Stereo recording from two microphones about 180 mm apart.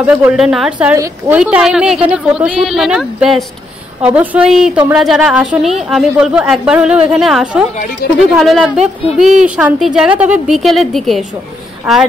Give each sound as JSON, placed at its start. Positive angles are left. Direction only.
{"t": 0.0, "sound": "a woman's voice", "side_deg": -10}
{"t": 8.0, "sound": "speech", "side_deg": 60}
{"t": 8.4, "sound": "a woman's voice", "side_deg": 0}